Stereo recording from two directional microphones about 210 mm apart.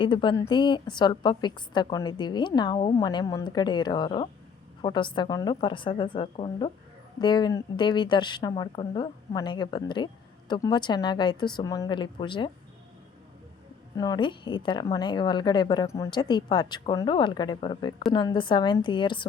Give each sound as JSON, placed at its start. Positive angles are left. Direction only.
{"t": 0.0, "sound": "a woman's voice", "side_deg": 25}
{"t": 13.9, "sound": "a woman's voice", "side_deg": 20}